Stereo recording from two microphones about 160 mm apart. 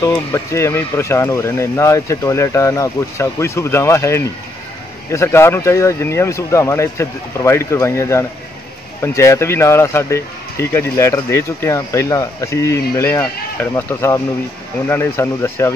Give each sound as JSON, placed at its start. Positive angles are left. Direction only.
{"t": 0.0, "sound": "speech", "side_deg": 20}